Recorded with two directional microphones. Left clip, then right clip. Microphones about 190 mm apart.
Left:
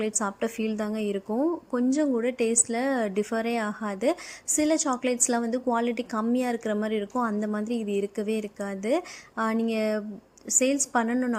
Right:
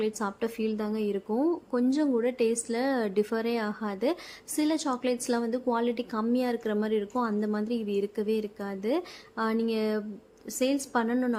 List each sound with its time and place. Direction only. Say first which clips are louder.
0.0 s a woman's voice: left 2 dB; 15° left (ahead or behind)